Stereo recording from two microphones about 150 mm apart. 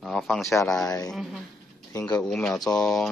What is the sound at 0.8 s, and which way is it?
Speech, 25° left (ahead or behind).